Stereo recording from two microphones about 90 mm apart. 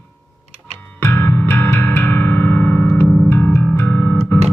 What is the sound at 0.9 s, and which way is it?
Music, 25° left (ahead or behind).